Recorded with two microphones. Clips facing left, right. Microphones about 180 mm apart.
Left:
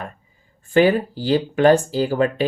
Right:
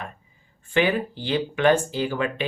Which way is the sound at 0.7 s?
40° left (ahead or behind).